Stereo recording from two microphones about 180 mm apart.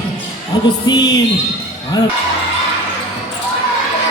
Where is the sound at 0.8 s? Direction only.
20° left (ahead or behind).